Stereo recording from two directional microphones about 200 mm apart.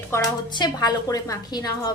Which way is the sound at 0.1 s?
20° left (ahead or behind).